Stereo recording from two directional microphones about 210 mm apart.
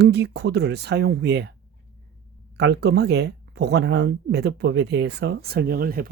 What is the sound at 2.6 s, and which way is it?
Speech, 55° right (ahead or behind).